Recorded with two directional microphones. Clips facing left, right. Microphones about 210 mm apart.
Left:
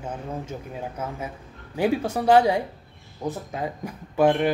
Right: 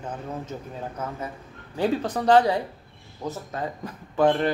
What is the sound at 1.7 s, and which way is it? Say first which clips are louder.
A woman's voice: left 1 dB; 10° left (ahead or behind).